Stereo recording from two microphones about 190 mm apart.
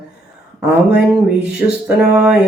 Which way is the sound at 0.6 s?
5° right (ahead or behind).